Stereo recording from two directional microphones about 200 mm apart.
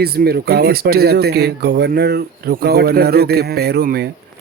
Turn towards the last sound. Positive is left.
turn(degrees=-50)  # may be behind; listen again after turning